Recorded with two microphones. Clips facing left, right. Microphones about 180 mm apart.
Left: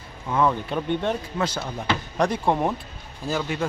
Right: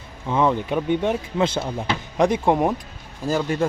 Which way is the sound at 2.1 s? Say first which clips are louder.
Right 5 dB; 20° right (ahead or behind).